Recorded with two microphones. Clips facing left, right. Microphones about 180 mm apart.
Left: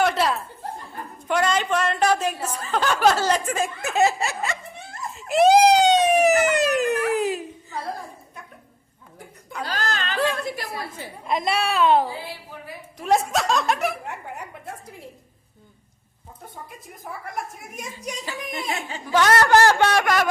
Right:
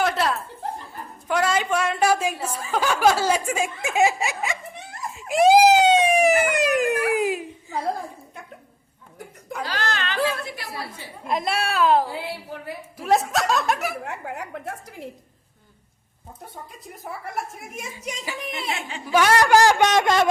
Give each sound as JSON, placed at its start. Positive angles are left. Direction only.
{"t": 0.0, "sound": "chuckle", "side_deg": 0}
{"t": 4.9, "sound": "a sound", "side_deg": -10}
{"t": 9.6, "sound": "a sound", "side_deg": 40}
{"t": 11.3, "sound": "a woman's voice", "side_deg": 0}
{"t": 14.0, "sound": "a woman's voice", "side_deg": -80}
{"t": 17.5, "sound": "a woman's voice", "side_deg": 0}
{"t": 17.9, "sound": "a man's voice", "side_deg": -10}
{"t": 18.5, "sound": "speech", "side_deg": 40}
{"t": 19.1, "sound": "a man's voice", "side_deg": -15}